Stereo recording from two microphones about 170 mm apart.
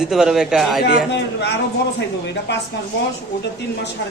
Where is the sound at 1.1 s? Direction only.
90° left.